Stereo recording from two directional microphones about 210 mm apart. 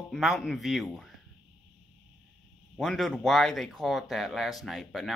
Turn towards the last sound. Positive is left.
turn(degrees=0)  # may be behind; listen again after turning